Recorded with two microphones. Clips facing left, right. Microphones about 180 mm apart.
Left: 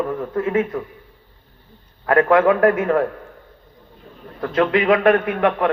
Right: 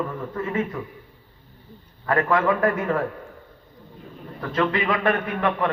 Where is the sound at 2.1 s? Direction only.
60° left (ahead or behind).